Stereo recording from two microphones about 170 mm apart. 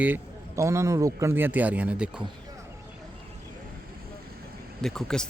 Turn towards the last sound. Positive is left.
turn(degrees=5)  # may be behind; listen again after turning